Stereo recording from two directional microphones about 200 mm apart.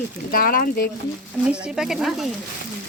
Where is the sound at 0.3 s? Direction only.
45° left (ahead or behind).